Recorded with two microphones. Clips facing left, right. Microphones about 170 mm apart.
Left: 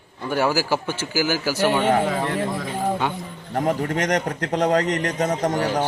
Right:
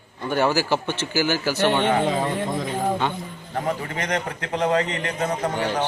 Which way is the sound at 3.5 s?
45° left (ahead or behind).